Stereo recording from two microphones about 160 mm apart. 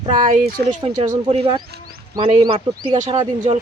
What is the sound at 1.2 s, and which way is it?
Speech, 35° right (ahead or behind).